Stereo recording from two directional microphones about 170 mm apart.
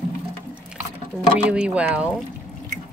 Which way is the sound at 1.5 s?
5° right (ahead or behind).